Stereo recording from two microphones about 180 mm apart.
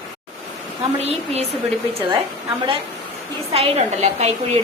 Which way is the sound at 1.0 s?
35° right (ahead or behind).